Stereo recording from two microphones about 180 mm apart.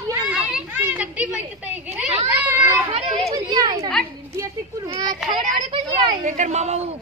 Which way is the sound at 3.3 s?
25° right (ahead or behind).